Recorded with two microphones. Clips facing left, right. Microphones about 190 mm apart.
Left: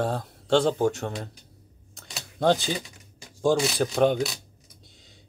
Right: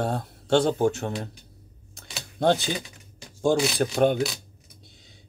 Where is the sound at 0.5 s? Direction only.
15° right (ahead or behind).